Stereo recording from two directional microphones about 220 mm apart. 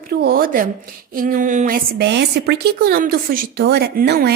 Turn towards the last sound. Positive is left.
turn(degrees=-45)  # may be behind; listen again after turning